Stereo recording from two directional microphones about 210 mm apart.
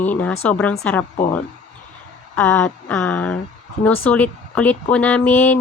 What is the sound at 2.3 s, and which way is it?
A woman's voice, 5° left (ahead or behind).